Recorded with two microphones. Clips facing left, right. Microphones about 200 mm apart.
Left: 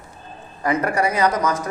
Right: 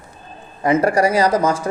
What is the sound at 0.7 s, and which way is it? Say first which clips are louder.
Speech: right 5 dB; 30° right (ahead or behind).